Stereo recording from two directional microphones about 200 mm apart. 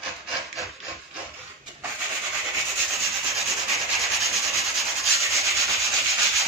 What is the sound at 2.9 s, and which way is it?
Rub, centre (ahead or behind).